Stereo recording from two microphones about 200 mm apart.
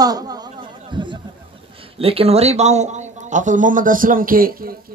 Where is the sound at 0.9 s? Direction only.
20° right (ahead or behind).